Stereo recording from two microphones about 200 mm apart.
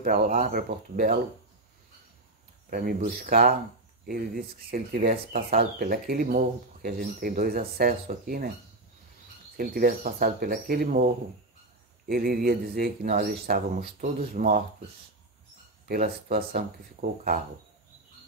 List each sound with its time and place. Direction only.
0.0 s speech: 45° right (ahead or behind)
2.7 s speech: 50° right (ahead or behind)
9.6 s speech: 45° right (ahead or behind)
12.1 s speech: 45° right (ahead or behind)
15.9 s speech: 50° right (ahead or behind)